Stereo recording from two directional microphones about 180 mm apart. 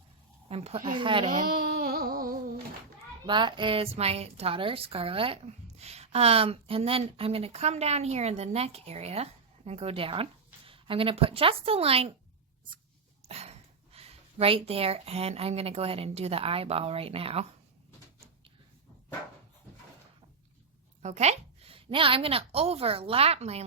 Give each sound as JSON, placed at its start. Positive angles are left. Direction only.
{"t": 0.4, "sound": "speech", "side_deg": -35}
{"t": 0.9, "sound": "speech", "side_deg": -30}
{"t": 1.3, "sound": "a sound", "side_deg": -55}
{"t": 3.2, "sound": "a woman's voice", "side_deg": -25}
{"t": 13.2, "sound": "speech", "side_deg": -35}
{"t": 21.0, "sound": "a woman's voice", "side_deg": -40}